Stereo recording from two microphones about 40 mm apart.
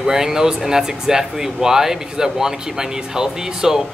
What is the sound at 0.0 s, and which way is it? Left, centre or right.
Speech, centre.